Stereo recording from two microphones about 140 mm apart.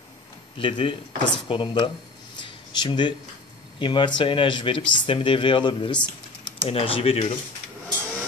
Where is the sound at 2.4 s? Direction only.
35° left (ahead or behind).